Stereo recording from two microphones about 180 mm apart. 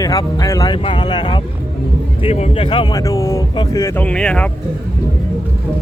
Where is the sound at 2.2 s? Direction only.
35° left (ahead or behind); by 4.5 s 5° left (ahead or behind).